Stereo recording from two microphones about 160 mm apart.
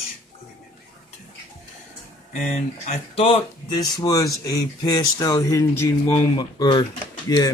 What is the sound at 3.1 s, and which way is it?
Speech, 35° left (ahead or behind).